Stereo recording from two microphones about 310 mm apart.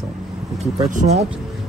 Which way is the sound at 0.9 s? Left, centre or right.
Right.